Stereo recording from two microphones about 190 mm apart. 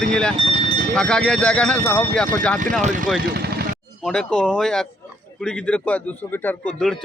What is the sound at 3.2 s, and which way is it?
Vehicle, 55° right (ahead or behind).